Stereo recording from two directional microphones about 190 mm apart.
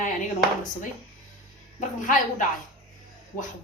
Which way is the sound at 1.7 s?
40° left (ahead or behind).